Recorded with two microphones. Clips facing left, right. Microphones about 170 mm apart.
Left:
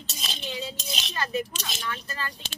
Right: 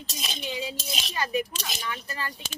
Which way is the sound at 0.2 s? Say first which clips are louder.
Right 1 dB; 10° right (ahead or behind).